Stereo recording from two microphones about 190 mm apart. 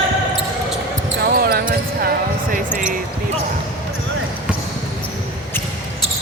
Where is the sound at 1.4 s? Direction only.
55° right (ahead or behind).